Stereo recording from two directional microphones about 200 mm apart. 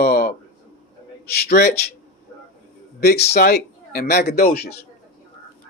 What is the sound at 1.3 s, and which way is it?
Speech, 50° left (ahead or behind).